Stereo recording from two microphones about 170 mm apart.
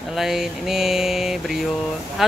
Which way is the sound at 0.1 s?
Centre (ahead or behind).